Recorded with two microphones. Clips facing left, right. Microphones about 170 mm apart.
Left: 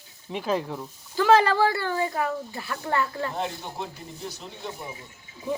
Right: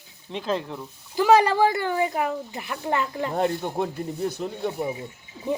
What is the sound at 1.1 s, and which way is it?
Speech, 15° right (ahead or behind).